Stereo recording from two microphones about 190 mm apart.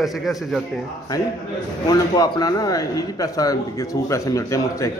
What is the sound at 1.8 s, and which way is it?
A man's voice, 20° left (ahead or behind).